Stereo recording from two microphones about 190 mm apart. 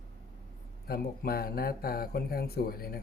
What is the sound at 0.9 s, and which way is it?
Speech, 50° left (ahead or behind).